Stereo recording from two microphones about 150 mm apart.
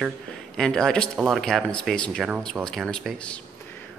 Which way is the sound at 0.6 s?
5° left (ahead or behind).